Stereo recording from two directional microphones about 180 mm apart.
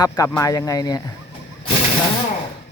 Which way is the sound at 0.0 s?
20° left (ahead or behind).